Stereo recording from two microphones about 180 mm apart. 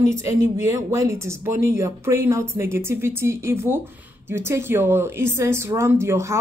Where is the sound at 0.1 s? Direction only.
15° right (ahead or behind).